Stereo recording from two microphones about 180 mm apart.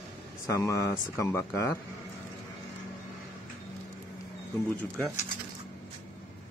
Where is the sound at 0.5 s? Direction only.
15° left (ahead or behind).